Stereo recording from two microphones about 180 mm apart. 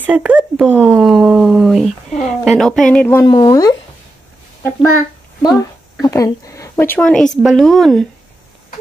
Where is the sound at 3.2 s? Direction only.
20° left (ahead or behind).